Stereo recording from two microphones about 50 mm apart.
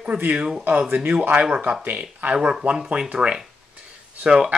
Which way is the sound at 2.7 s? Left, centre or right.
Centre.